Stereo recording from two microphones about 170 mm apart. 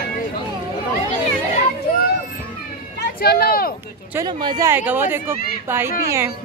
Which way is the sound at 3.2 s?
65° left (ahead or behind).